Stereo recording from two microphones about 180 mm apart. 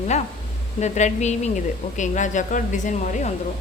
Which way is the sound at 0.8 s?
40° left (ahead or behind).